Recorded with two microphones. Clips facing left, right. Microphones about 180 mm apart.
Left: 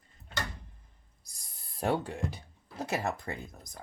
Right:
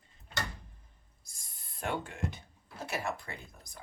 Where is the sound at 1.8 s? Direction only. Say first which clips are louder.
Left 5 dB; 35° left (ahead or behind).